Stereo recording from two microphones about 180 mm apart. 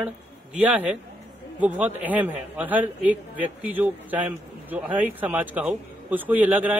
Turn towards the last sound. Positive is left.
turn(degrees=-10)  # may be behind; listen again after turning